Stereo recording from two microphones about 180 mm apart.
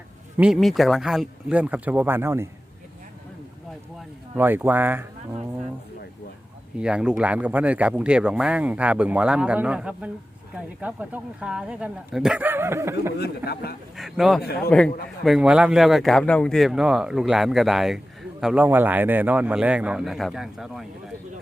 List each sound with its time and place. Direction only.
0.3 s speech: 5° right (ahead or behind)
4.4 s speech: 10° right (ahead or behind)
6.7 s speech: 5° right (ahead or behind)
13.1 s speech: 60° left (ahead or behind)
13.9 s a man's voice: centre (ahead or behind)